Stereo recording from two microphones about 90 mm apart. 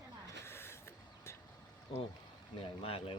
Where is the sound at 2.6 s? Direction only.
90° left.